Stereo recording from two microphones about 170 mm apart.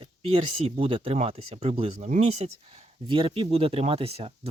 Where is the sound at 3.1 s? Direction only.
30° right (ahead or behind).